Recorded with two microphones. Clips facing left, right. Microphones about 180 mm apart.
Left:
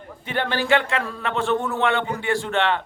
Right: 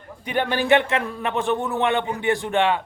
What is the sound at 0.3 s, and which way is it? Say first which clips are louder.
A man's voice: right 2 dB; 15° right (ahead or behind).